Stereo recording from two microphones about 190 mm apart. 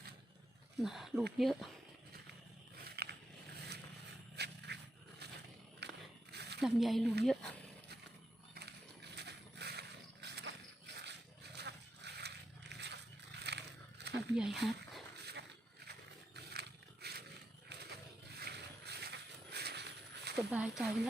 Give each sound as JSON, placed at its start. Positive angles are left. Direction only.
{"t": 0.8, "sound": "speech", "side_deg": 0}
{"t": 2.8, "sound": "a sound", "side_deg": -55}
{"t": 4.4, "sound": "dog", "side_deg": -60}
{"t": 5.8, "sound": "biting", "side_deg": -65}
{"t": 6.3, "sound": "squish", "side_deg": -60}
{"t": 6.6, "sound": "speech", "side_deg": 0}
{"t": 8.5, "sound": "horse", "side_deg": -60}
{"t": 14.3, "sound": "speech", "side_deg": 0}
{"t": 15.2, "sound": "a sound", "side_deg": -60}
{"t": 15.9, "sound": "roaring cats", "side_deg": -60}
{"t": 18.3, "sound": "boat", "side_deg": -60}
{"t": 20.5, "sound": "speech", "side_deg": -5}